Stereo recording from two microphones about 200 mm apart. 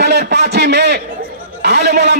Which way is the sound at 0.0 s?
55° right (ahead or behind).